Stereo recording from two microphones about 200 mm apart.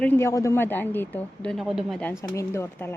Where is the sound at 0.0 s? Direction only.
10° left (ahead or behind).